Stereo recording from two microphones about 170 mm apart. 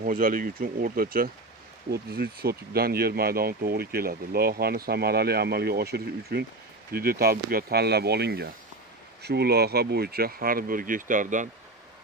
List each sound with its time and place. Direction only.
0.0 s speech: 60° right (ahead or behind)